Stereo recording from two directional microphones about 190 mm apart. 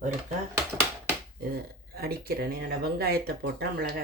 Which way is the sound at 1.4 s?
55° right (ahead or behind).